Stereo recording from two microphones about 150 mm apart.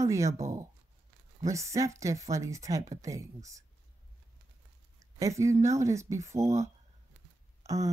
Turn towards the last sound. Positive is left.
turn(degrees=-20)  # may be behind; listen again after turning